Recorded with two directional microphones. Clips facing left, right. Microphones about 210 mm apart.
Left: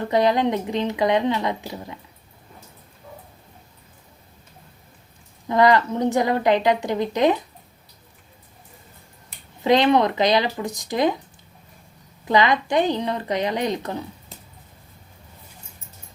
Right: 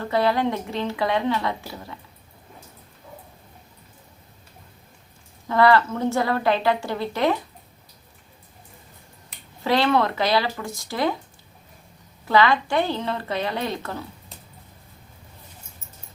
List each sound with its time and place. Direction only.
0.0 s a woman's voice: 20° left (ahead or behind)
5.5 s a woman's voice: 20° left (ahead or behind)
9.6 s a woman's voice: 20° left (ahead or behind)
12.2 s a woman's voice: 20° left (ahead or behind)